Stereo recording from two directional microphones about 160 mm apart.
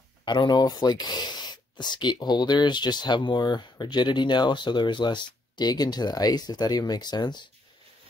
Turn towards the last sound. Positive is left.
turn(degrees=25)  # may be behind; listen again after turning